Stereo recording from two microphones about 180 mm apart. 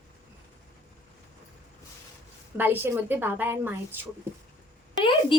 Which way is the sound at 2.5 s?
10° right (ahead or behind).